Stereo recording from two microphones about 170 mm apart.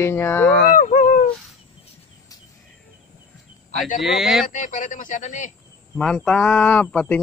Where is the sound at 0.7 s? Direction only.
50° left (ahead or behind).